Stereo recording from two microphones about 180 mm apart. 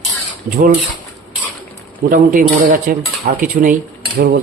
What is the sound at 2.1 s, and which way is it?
Speech, 50° right (ahead or behind).